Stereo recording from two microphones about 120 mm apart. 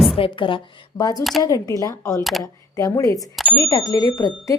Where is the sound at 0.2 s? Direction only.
45° left (ahead or behind).